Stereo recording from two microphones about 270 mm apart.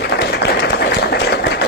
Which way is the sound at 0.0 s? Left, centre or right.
Left.